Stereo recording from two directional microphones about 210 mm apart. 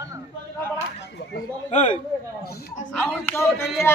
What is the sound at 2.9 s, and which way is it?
Speech, 10° left (ahead or behind).